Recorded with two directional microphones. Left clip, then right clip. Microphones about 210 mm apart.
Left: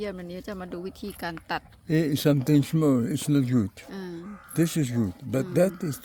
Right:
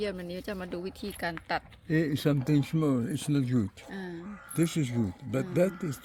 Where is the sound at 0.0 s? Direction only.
10° left (ahead or behind).